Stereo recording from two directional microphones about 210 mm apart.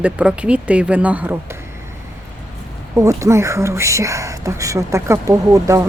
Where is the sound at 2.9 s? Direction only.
15° right (ahead or behind).